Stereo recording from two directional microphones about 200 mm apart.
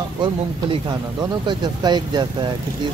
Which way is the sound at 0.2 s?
25° right (ahead or behind).